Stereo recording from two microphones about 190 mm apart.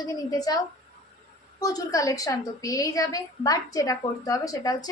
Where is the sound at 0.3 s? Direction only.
20° left (ahead or behind).